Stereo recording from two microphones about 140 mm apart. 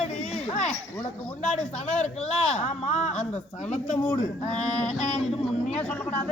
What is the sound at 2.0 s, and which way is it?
Speech, 55° left (ahead or behind).